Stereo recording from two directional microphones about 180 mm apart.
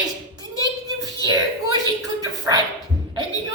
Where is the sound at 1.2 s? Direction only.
20° right (ahead or behind).